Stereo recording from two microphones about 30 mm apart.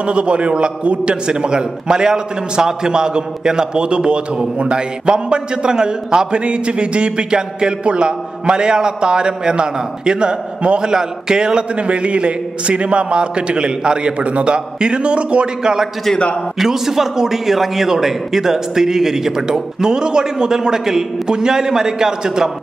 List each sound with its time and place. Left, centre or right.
0.0 s a man's voice: right
10.8 s a man's voice: right
11.7 s a man's voice: right
15.6 s a man's voice: right